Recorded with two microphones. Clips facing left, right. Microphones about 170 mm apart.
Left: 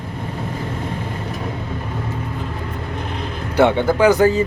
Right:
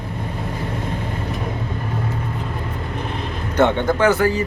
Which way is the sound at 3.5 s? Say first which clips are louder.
Left 2 dB; 10° left (ahead or behind).